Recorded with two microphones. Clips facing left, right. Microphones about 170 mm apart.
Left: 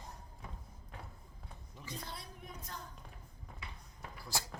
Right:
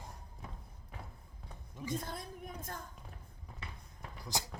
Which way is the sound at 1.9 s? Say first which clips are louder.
Right 7 dB; 50° right (ahead or behind).